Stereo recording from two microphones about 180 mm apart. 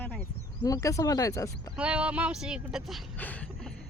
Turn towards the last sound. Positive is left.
turn(degrees=5)  # may be behind; listen again after turning